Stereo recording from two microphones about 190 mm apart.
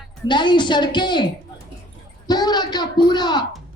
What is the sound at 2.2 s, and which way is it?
A woman's voice, 20° left (ahead or behind).